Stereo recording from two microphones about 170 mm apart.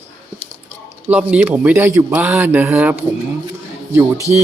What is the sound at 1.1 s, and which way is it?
Speech, 10° right (ahead or behind).